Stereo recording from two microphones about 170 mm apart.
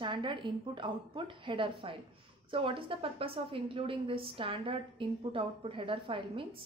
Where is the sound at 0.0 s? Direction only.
30° right (ahead or behind).